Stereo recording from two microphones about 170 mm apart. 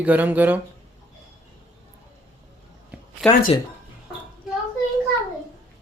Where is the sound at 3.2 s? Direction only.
Centre (ahead or behind).